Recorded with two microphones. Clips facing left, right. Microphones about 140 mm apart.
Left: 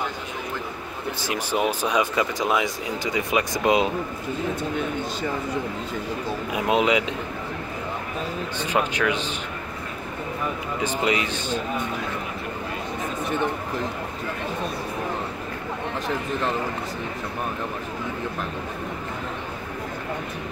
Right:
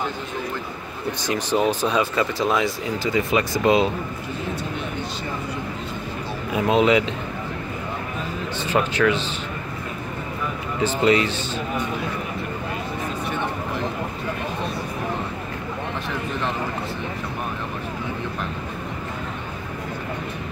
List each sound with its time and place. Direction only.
1.2 s speech: 10° left (ahead or behind)
6.5 s speech: 15° left (ahead or behind)
8.6 s speech: 15° left (ahead or behind)
10.8 s speech: 15° left (ahead or behind)